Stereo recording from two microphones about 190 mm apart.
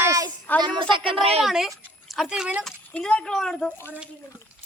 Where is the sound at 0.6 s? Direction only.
25° right (ahead or behind).